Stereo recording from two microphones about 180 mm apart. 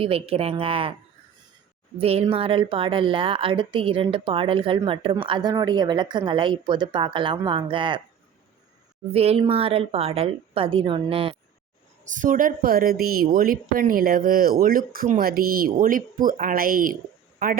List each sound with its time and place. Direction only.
0.0 s a woman's voice: 30° right (ahead or behind)
2.0 s speech: 35° right (ahead or behind)
9.1 s a woman's voice: 35° right (ahead or behind)
12.0 s a woman's voice: 45° right (ahead or behind)